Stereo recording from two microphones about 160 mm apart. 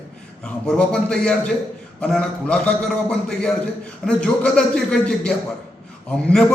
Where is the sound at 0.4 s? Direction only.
5° left (ahead or behind).